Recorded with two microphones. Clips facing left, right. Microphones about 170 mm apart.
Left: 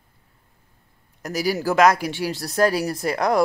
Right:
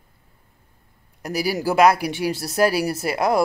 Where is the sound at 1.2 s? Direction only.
10° right (ahead or behind).